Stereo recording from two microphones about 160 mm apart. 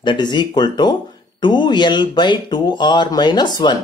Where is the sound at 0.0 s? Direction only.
30° left (ahead or behind).